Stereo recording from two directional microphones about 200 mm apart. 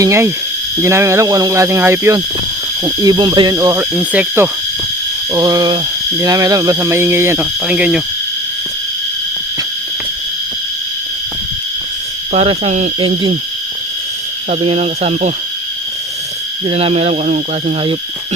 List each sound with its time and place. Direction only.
0.0 s speech: 15° right (ahead or behind)
5.3 s speech: 20° right (ahead or behind)
12.3 s speech: 30° right (ahead or behind)
14.5 s speech: 30° right (ahead or behind)
16.6 s speech: 30° right (ahead or behind)